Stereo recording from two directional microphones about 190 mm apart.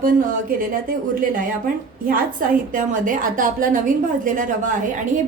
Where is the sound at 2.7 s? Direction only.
45° right (ahead or behind).